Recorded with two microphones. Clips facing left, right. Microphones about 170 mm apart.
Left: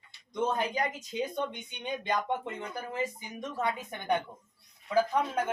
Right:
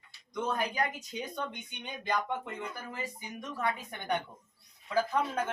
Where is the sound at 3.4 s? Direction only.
20° left (ahead or behind).